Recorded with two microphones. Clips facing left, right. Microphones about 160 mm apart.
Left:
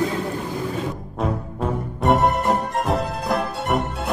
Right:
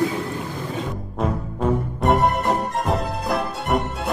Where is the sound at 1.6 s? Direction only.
Centre (ahead or behind).